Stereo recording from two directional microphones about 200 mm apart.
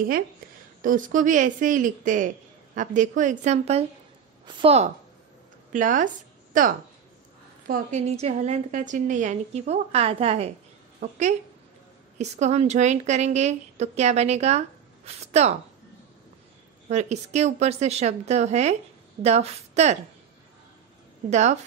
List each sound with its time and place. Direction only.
0.8 s a woman's voice: 40° right (ahead or behind)
16.9 s a woman's voice: 35° right (ahead or behind)
21.3 s a woman's voice: 35° right (ahead or behind)